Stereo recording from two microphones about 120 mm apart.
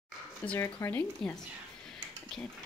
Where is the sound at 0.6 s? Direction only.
20° left (ahead or behind).